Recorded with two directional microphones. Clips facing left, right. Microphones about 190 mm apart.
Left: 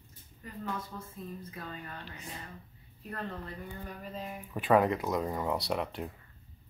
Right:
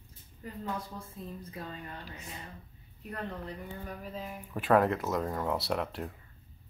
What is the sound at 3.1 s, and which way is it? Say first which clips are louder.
Speech: right 1 dB; 15° right (ahead or behind).